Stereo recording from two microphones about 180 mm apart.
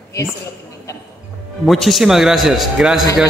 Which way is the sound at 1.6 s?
Centre (ahead or behind).